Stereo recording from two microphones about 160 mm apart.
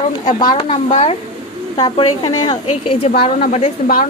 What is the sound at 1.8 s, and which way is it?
A woman's voice, 30° left (ahead or behind).